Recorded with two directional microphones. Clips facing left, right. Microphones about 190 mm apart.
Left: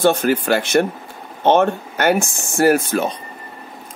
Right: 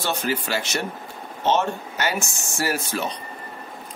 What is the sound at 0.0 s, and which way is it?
Speech, 50° left (ahead or behind).